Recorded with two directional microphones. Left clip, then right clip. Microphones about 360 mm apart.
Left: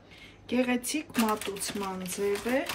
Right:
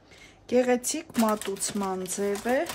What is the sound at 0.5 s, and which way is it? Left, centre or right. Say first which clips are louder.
Speech: right 6 dB; centre.